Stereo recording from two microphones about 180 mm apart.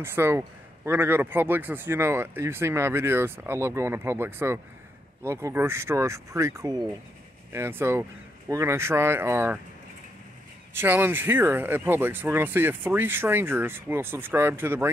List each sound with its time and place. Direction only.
0.0 s a man's voice: 15° right (ahead or behind)
10.8 s a man's voice: 10° right (ahead or behind)